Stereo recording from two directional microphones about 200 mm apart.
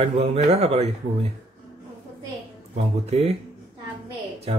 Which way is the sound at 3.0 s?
30° right (ahead or behind).